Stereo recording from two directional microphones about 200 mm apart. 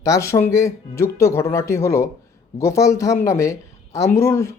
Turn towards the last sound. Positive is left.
turn(degrees=15)  # may be behind; listen again after turning